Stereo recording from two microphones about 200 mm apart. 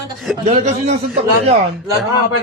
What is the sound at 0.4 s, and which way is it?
Speech, 35° right (ahead or behind).